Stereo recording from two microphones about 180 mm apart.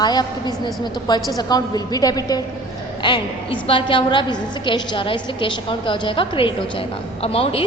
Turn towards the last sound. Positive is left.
turn(degrees=30)  # may be behind; listen again after turning